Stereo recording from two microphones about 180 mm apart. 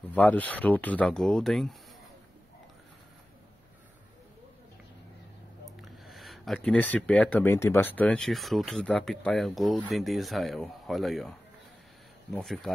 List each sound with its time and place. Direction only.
0.0 s speech: 10° left (ahead or behind)
5.8 s speech: centre (ahead or behind)